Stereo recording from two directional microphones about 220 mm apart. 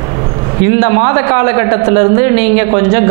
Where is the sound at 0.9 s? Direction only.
20° right (ahead or behind).